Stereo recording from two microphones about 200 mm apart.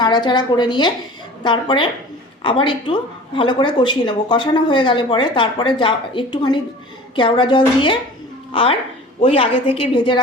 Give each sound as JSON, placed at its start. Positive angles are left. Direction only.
{"t": 0.0, "sound": "a woman's voice", "side_deg": 20}